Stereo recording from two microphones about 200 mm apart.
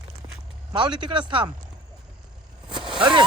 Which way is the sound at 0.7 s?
20° right (ahead or behind).